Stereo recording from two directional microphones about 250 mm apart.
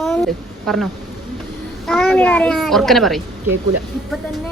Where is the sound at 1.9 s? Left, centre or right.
Centre.